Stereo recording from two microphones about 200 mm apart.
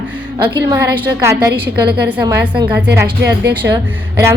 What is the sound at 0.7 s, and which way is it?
A woman's voice, 15° right (ahead or behind).